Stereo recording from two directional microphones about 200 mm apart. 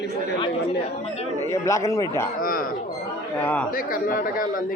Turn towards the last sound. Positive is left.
turn(degrees=45)  # may be behind; listen again after turning